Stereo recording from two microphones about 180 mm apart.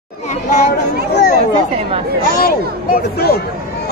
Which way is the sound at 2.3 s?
55° left (ahead or behind).